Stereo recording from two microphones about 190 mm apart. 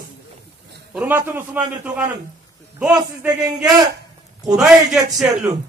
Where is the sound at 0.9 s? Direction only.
10° right (ahead or behind).